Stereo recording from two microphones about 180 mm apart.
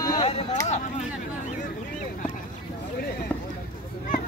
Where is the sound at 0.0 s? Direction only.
20° left (ahead or behind).